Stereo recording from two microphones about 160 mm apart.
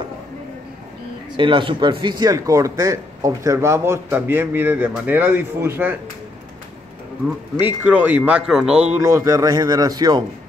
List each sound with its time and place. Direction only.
1.3 s speech: 30° right (ahead or behind); by 5.9 s 15° right (ahead or behind)
7.5 s speech: 10° right (ahead or behind)
9.0 s a man's voice: 20° right (ahead or behind)